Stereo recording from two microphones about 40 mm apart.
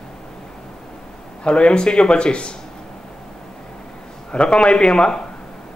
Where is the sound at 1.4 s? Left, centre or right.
Left.